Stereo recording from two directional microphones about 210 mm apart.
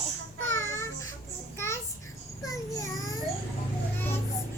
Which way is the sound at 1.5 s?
15° left (ahead or behind).